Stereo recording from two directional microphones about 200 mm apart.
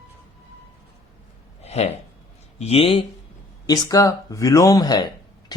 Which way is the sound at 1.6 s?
30° left (ahead or behind).